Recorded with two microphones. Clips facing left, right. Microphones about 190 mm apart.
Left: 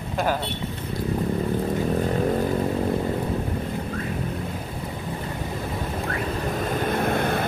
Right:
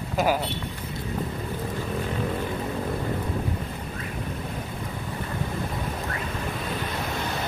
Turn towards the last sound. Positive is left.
turn(degrees=55)  # may be behind; listen again after turning